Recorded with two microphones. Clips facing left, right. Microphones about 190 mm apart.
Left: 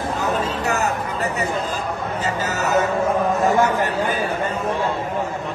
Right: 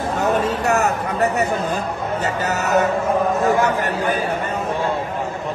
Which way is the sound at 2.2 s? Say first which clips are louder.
Even; 65° right (ahead or behind).